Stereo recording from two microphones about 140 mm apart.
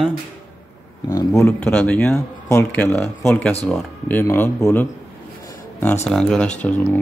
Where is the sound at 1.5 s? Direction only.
10° left (ahead or behind).